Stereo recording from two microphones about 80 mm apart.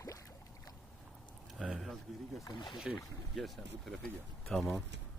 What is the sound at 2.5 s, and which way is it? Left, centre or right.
Speech, left.